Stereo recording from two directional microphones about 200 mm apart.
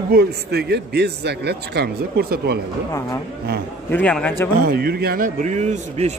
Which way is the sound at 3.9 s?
5° left (ahead or behind).